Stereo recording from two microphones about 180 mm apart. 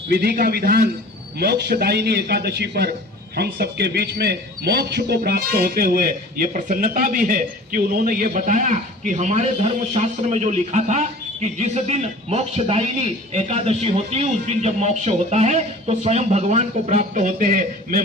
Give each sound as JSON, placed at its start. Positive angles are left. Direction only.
{"t": 0.1, "sound": "a man's voice", "side_deg": -60}